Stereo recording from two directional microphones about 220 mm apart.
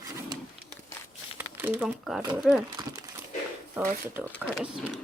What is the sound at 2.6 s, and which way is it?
Speech, 20° right (ahead or behind).